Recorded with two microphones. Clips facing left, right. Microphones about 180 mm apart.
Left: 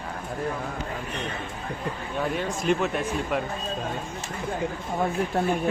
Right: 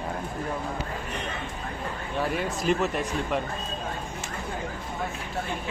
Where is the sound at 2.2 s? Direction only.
5° right (ahead or behind).